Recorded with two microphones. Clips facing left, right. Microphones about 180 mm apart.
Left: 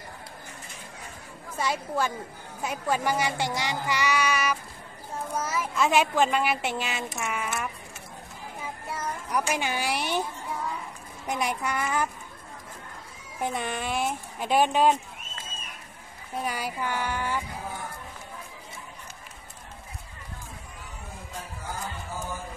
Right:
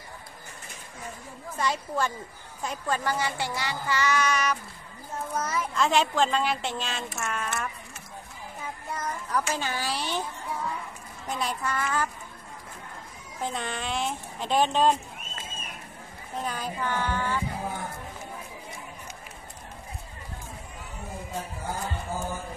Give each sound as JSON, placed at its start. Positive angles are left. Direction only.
{"t": 1.6, "sound": "speech", "side_deg": 10}
{"t": 8.9, "sound": "speech", "side_deg": 10}
{"t": 11.2, "sound": "speech", "side_deg": 15}
{"t": 13.4, "sound": "speech", "side_deg": 15}
{"t": 16.4, "sound": "speech", "side_deg": 10}